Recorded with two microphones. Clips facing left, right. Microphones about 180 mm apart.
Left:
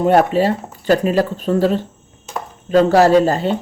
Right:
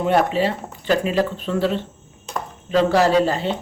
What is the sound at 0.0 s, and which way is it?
Speech, 45° left (ahead or behind).